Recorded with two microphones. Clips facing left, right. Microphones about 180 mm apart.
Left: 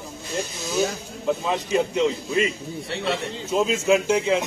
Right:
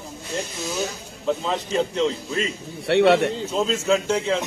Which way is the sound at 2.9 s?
70° right (ahead or behind).